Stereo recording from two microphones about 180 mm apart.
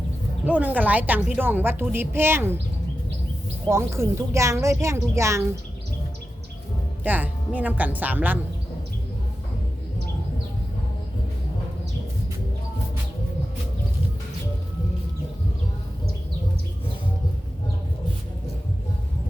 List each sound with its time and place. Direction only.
0.4 s a woman's voice: 10° right (ahead or behind)
3.7 s a woman's voice: 15° right (ahead or behind)
7.0 s a woman's voice: 10° right (ahead or behind)